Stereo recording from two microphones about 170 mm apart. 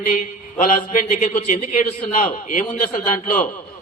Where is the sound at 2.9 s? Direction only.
50° left (ahead or behind).